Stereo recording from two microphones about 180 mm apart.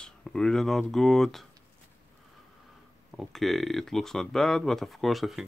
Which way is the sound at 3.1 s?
Centre (ahead or behind).